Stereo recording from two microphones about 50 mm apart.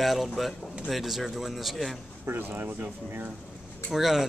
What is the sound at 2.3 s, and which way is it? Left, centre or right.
Speech, right.